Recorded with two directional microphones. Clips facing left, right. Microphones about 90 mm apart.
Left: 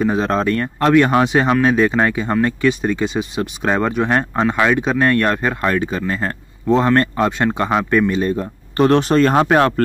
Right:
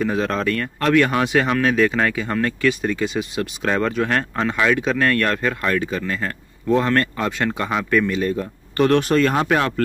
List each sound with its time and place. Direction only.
0.0 s speech: 25° left (ahead or behind); by 9.8 s 40° left (ahead or behind)